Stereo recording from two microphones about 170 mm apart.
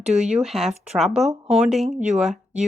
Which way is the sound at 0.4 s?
Centre (ahead or behind).